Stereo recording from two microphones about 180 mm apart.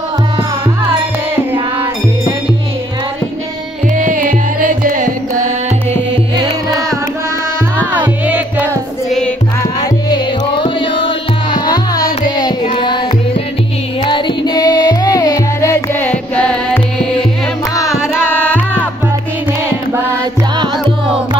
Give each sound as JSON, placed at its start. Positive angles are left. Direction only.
{"t": 3.9, "sound": "music", "side_deg": -50}
{"t": 10.0, "sound": "music", "side_deg": 25}
{"t": 12.2, "sound": "carnatic music", "side_deg": 30}
{"t": 14.0, "sound": "music", "side_deg": 25}
{"t": 17.8, "sound": "carnatic music", "side_deg": -5}
{"t": 18.3, "sound": "music", "side_deg": 10}